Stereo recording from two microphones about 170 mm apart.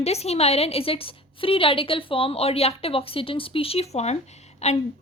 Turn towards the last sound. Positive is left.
turn(degrees=40)  # may be behind; listen again after turning